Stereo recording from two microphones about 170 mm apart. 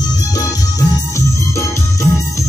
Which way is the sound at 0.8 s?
15° left (ahead or behind).